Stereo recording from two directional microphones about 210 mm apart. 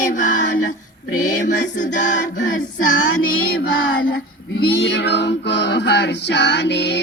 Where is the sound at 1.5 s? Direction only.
35° left (ahead or behind).